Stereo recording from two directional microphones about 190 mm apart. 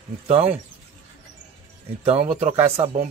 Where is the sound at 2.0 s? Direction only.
35° right (ahead or behind).